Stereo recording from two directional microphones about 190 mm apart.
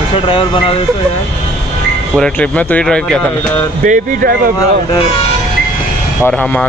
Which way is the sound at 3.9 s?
50° right (ahead or behind).